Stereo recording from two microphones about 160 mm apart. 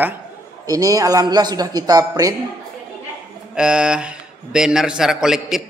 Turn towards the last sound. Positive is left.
turn(degrees=-5)  # may be behind; listen again after turning